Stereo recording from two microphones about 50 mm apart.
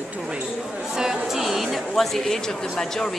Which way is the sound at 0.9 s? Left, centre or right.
Centre.